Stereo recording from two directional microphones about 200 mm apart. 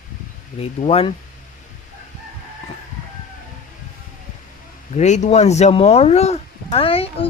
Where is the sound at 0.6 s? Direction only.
30° left (ahead or behind).